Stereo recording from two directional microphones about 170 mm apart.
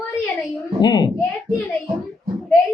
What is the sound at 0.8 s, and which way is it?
Speech, 25° left (ahead or behind).